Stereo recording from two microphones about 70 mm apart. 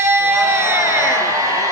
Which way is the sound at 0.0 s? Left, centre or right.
Right.